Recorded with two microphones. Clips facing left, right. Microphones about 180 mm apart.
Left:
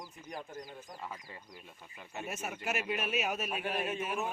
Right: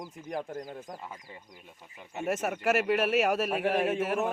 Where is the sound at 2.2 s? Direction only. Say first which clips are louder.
Right 11 dB; 80° right.